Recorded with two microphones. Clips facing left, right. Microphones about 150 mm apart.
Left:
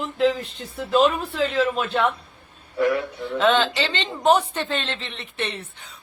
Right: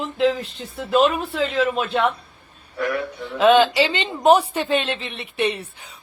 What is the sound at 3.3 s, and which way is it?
A woman's voice, 10° right (ahead or behind).